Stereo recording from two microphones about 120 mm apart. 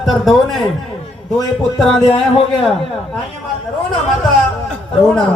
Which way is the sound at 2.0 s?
50° left (ahead or behind).